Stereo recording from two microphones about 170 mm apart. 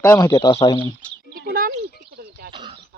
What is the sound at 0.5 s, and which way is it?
Speech, 35° left (ahead or behind).